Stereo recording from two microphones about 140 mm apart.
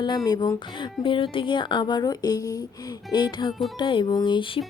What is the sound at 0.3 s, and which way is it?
Speech, 30° left (ahead or behind).